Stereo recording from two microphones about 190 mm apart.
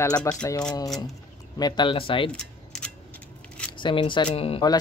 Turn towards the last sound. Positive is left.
turn(degrees=30)  # may be behind; listen again after turning